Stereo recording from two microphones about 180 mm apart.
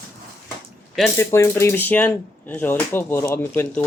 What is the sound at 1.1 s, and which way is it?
Speech, 15° left (ahead or behind).